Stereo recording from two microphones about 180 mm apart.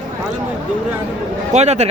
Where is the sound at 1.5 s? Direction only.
40° right (ahead or behind).